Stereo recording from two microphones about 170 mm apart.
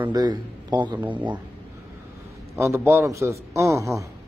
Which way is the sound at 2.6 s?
15° right (ahead or behind).